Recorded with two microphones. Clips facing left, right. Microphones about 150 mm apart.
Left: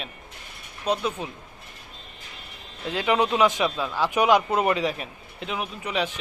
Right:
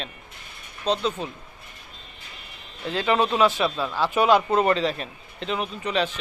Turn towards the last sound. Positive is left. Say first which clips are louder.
# right 2 dB
turn(degrees=10)  # may be behind; listen again after turning